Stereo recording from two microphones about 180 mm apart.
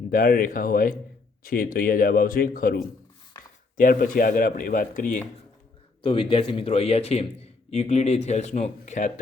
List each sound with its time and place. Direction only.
0.1 s speech: 55° left (ahead or behind)
6.0 s a man's voice: 30° left (ahead or behind); by 9.2 s 45° left (ahead or behind)